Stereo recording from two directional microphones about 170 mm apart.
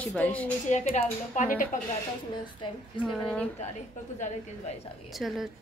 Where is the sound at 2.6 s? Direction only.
30° left (ahead or behind).